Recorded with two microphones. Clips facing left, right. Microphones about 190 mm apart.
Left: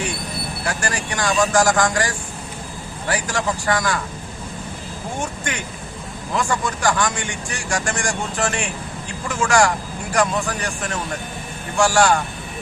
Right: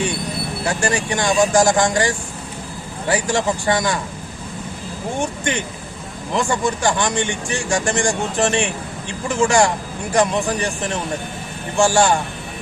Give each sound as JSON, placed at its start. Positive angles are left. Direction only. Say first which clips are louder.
{"t": 0.6, "sound": "speech", "louder": "right 5 dB", "side_deg": -25}
{"t": 6.3, "sound": "speech", "louder": "right 3 dB", "side_deg": -25}